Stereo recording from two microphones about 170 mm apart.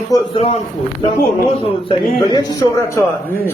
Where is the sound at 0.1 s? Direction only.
20° left (ahead or behind).